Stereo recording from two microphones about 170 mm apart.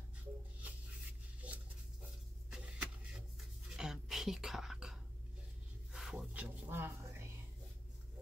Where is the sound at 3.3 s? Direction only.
Centre (ahead or behind).